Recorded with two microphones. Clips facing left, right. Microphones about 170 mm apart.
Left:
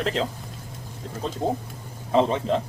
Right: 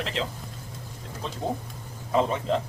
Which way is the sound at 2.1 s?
25° left (ahead or behind).